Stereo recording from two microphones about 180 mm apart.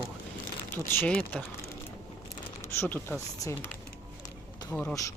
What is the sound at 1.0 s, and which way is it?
Speech, 10° left (ahead or behind).